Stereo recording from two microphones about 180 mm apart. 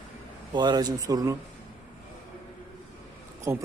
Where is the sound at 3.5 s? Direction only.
15° right (ahead or behind).